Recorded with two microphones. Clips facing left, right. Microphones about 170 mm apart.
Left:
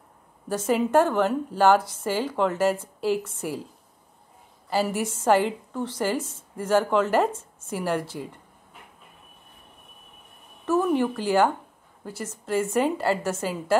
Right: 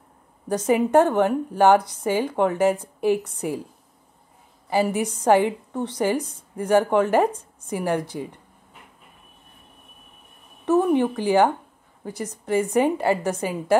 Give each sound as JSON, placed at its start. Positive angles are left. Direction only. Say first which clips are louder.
{"t": 0.5, "sound": "a woman's voice", "louder": "right 3 dB", "side_deg": -15}
{"t": 4.6, "sound": "a woman's voice", "louder": "right 3 dB", "side_deg": -15}
{"t": 10.6, "sound": "a woman's voice", "louder": "right 3 dB", "side_deg": -20}